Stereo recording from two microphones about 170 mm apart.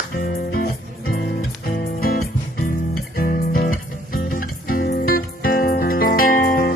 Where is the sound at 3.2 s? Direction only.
60° left (ahead or behind).